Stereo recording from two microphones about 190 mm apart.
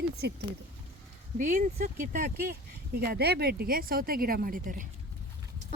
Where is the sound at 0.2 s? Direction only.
60° right (ahead or behind).